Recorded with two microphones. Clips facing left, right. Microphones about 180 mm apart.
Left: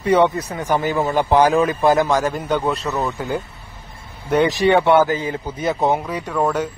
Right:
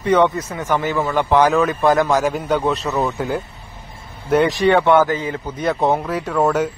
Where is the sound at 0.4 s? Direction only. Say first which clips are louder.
Even; 35° left (ahead or behind).